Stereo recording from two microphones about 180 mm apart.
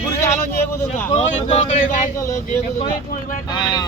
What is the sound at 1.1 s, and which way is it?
Speech, 40° left (ahead or behind).